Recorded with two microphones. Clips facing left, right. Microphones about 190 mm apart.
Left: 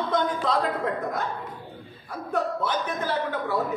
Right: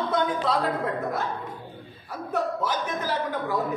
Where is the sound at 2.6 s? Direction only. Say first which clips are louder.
Left 1 dB; 10° right (ahead or behind).